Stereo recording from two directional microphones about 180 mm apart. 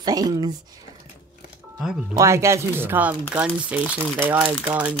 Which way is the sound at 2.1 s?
15° right (ahead or behind).